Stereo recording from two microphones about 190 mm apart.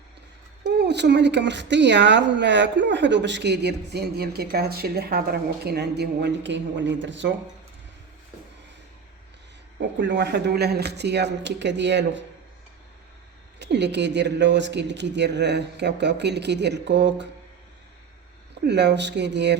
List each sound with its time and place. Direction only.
0.8 s speech: 65° right (ahead or behind)
10.0 s speech: 65° right (ahead or behind)
13.6 s speech: 65° right (ahead or behind)
18.6 s speech: 65° right (ahead or behind)